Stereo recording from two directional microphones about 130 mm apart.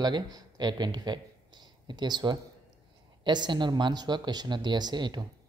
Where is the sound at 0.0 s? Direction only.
30° right (ahead or behind).